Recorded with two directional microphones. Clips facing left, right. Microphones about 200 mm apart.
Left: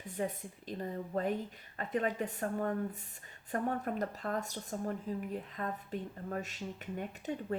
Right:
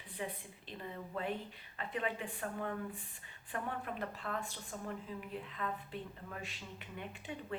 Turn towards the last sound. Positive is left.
turn(degrees=45)  # may be behind; listen again after turning